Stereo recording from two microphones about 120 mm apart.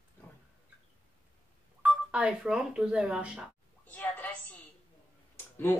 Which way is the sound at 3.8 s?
15° left (ahead or behind).